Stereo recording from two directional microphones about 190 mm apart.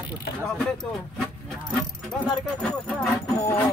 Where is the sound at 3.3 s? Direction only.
15° left (ahead or behind).